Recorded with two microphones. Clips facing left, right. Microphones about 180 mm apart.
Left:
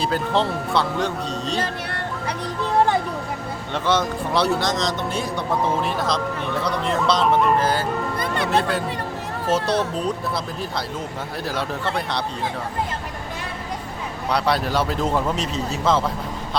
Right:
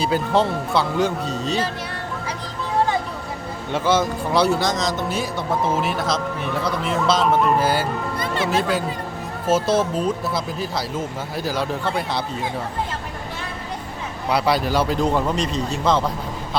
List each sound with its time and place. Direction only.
0.0 s speech: centre (ahead or behind)
1.6 s a sound: 65° left (ahead or behind)
3.7 s speech: centre (ahead or behind)
14.3 s speech: 5° right (ahead or behind)